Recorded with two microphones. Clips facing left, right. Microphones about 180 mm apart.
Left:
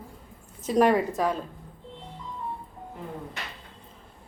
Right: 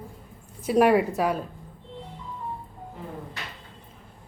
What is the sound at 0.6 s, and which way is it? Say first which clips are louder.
Speech: right 2 dB; 10° right (ahead or behind).